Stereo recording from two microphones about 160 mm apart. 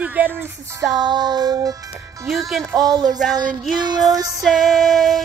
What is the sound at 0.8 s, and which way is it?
Music, 25° right (ahead or behind).